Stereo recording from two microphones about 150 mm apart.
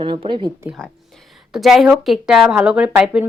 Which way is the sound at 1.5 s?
5° right (ahead or behind).